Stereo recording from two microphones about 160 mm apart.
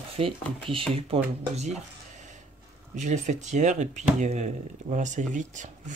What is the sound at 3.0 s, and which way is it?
Speech, 50° right (ahead or behind).